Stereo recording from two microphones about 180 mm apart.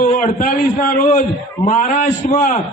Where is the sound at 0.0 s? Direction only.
45° left (ahead or behind).